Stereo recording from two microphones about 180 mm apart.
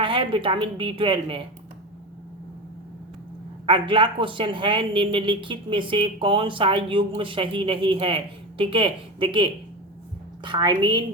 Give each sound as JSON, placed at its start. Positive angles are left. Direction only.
{"t": 0.0, "sound": "speech", "side_deg": -30}
{"t": 3.7, "sound": "speech", "side_deg": -30}